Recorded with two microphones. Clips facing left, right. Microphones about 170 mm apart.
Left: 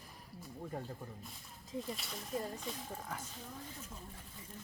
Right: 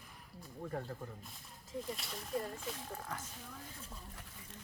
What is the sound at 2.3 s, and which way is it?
Speech, 20° left (ahead or behind).